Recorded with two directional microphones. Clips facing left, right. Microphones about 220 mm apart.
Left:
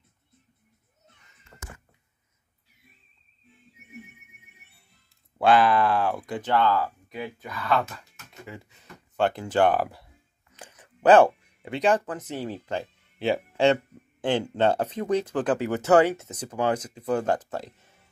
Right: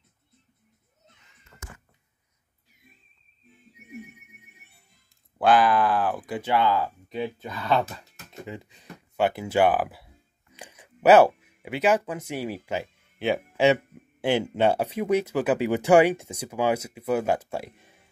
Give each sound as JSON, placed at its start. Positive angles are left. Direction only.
{"t": 1.5, "sound": "a sound", "side_deg": 30}
{"t": 5.4, "sound": "speech", "side_deg": 0}
{"t": 7.1, "sound": "speech", "side_deg": -25}